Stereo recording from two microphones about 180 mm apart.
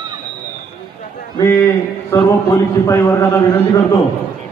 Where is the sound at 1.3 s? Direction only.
15° left (ahead or behind).